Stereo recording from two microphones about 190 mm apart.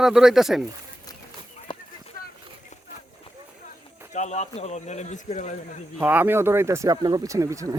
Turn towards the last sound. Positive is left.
turn(degrees=-15)  # may be behind; listen again after turning